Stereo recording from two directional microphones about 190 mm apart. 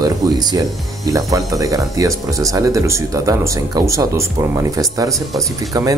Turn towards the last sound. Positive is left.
turn(degrees=-20)  # may be behind; listen again after turning